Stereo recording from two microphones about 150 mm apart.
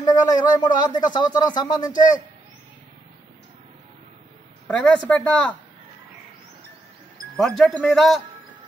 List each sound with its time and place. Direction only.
0.0 s a man's voice: 25° left (ahead or behind)
4.6 s a woman's voice: 10° left (ahead or behind)
7.3 s a man's voice: centre (ahead or behind)